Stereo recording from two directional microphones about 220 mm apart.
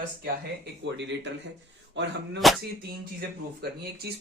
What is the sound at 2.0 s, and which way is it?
Speech, 55° right (ahead or behind).